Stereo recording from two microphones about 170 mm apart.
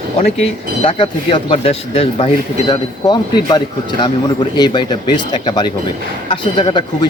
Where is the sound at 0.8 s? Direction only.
30° left (ahead or behind).